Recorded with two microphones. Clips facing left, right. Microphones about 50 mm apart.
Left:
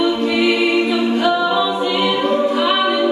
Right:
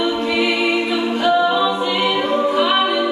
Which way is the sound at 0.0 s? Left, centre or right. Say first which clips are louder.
Left 2 dB; centre.